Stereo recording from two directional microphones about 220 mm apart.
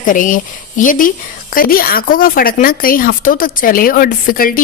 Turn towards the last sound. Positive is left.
turn(degrees=40)  # may be behind; listen again after turning